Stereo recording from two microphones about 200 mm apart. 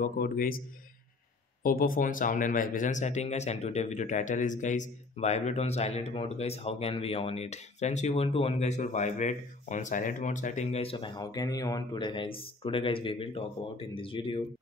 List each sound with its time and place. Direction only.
0.0 s a man's voice: 45° left (ahead or behind)
1.6 s speech: 45° left (ahead or behind); by 14.4 s 25° left (ahead or behind)